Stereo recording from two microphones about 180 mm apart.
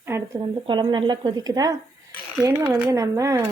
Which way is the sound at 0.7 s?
25° right (ahead or behind).